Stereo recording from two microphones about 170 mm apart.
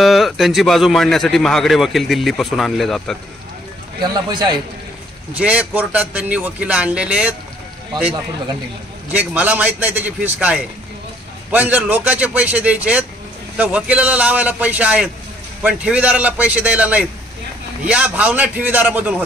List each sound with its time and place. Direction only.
0.0 s a man's voice: centre (ahead or behind)
4.0 s a man's voice: 25° right (ahead or behind)
5.3 s a man's voice: 10° right (ahead or behind)
9.1 s a man's voice: 10° right (ahead or behind)